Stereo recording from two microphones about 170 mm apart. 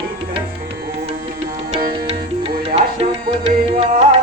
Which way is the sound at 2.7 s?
35° right (ahead or behind).